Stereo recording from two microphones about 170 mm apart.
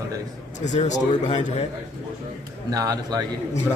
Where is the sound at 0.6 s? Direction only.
45° left (ahead or behind).